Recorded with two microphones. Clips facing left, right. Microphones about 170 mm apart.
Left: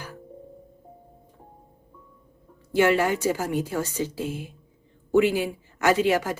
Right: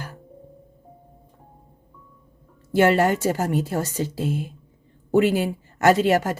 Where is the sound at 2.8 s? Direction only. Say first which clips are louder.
Right 3 dB; 45° right (ahead or behind).